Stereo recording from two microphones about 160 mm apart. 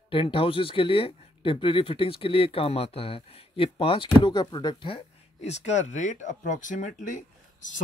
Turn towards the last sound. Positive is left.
turn(degrees=50)  # may be behind; listen again after turning